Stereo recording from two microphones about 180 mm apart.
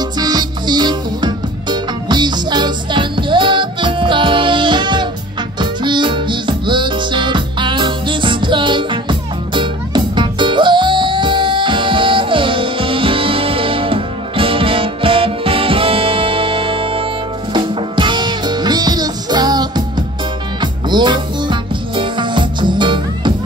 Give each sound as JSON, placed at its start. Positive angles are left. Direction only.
{"t": 0.2, "sound": "music", "side_deg": -25}